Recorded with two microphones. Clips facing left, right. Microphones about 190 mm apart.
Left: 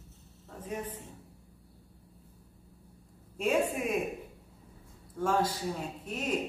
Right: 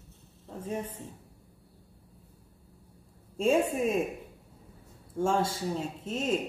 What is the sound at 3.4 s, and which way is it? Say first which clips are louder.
Speech: right 3 dB; 25° right (ahead or behind).